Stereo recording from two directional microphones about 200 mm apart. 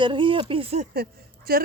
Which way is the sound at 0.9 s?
50° right (ahead or behind).